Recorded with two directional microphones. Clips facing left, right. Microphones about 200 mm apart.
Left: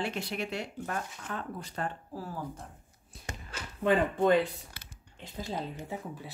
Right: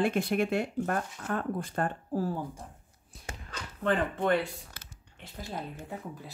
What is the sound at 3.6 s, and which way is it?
Speech, 10° left (ahead or behind).